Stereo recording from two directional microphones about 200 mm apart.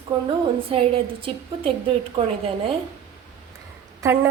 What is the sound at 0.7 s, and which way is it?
A woman's voice, 25° right (ahead or behind).